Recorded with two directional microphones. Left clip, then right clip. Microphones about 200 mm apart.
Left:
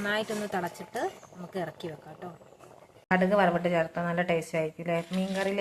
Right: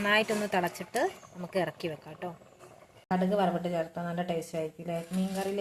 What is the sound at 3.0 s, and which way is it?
Speech, 10° left (ahead or behind).